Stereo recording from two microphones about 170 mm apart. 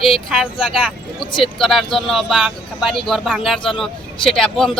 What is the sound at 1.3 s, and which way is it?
Speech, 30° left (ahead or behind).